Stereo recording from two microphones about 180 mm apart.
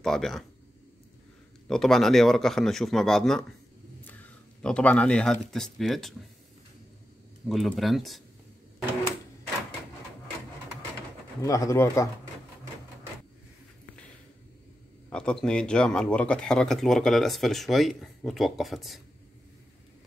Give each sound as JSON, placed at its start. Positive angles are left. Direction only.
{"t": 0.0, "sound": "speech", "side_deg": 0}
{"t": 1.7, "sound": "speech", "side_deg": 0}
{"t": 7.4, "sound": "speech", "side_deg": 0}
{"t": 11.4, "sound": "speech", "side_deg": 20}
{"t": 15.0, "sound": "speech", "side_deg": 5}